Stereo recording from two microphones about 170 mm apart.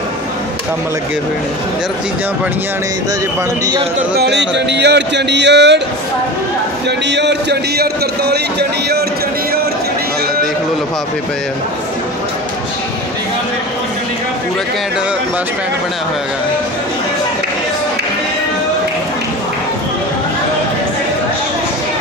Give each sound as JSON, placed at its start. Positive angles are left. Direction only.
{"t": 4.2, "sound": "speech", "side_deg": -85}
{"t": 7.1, "sound": "speech", "side_deg": -90}